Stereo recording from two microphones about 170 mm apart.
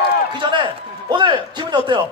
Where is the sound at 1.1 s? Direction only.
25° right (ahead or behind).